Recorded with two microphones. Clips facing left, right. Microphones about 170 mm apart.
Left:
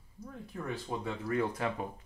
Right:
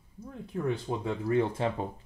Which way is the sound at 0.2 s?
25° right (ahead or behind).